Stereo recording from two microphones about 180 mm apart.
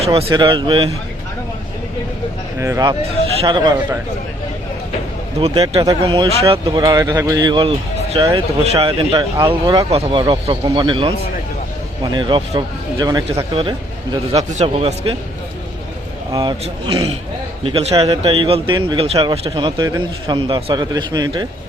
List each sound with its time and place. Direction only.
0.0 s speech: 30° right (ahead or behind)
2.6 s speech: 15° right (ahead or behind)
5.4 s speech: 30° right (ahead or behind)
12.1 s speech: 25° right (ahead or behind)
16.3 s speech: 25° right (ahead or behind)